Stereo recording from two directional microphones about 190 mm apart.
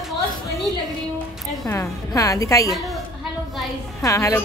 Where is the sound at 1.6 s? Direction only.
15° left (ahead or behind).